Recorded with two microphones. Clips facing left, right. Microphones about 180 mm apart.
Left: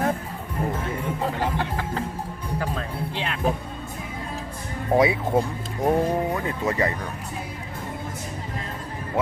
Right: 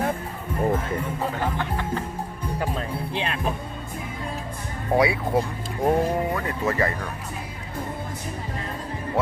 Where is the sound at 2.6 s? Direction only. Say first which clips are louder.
Right 1 dB; 20° right (ahead or behind).